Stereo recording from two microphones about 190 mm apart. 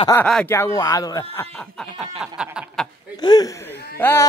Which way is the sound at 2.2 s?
5° right (ahead or behind).